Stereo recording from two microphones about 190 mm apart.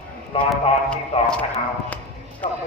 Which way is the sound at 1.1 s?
30° left (ahead or behind).